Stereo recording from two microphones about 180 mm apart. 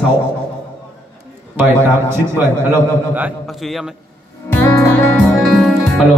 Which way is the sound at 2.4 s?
10° right (ahead or behind).